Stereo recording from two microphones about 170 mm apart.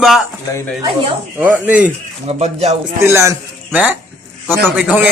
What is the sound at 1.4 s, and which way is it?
Speech, 10° right (ahead or behind).